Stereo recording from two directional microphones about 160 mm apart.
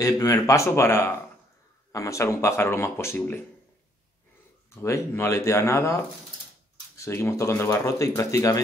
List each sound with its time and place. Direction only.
0.0 s speech: 20° left (ahead or behind)
4.6 s speech: 15° left (ahead or behind)